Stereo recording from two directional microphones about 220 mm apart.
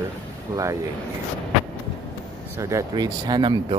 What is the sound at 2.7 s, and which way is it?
Speech, 20° right (ahead or behind).